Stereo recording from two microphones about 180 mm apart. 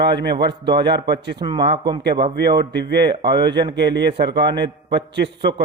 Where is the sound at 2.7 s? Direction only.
70° right (ahead or behind).